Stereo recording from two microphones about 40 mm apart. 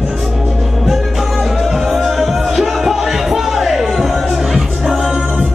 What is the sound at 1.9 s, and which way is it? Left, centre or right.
Music, centre.